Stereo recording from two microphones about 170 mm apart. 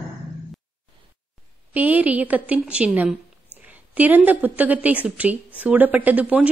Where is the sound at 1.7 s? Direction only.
10° right (ahead or behind).